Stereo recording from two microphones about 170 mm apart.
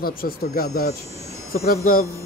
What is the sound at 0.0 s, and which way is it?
Speech, 60° left (ahead or behind).